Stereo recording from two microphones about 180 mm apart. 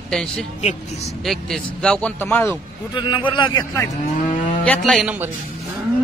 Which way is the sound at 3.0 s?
25° left (ahead or behind).